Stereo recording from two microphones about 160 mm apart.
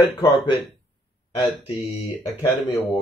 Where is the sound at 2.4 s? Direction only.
20° left (ahead or behind).